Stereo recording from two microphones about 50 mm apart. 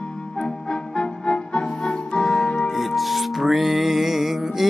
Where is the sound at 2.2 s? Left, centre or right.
Centre.